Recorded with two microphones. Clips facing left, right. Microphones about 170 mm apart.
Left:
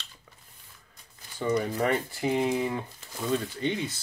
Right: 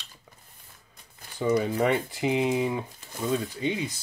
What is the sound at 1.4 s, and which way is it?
Speech, 10° right (ahead or behind).